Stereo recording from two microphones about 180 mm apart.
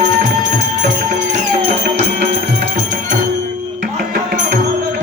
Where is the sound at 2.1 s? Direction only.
60° right (ahead or behind).